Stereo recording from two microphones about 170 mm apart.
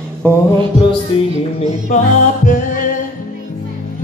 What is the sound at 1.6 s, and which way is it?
Music, 45° left (ahead or behind).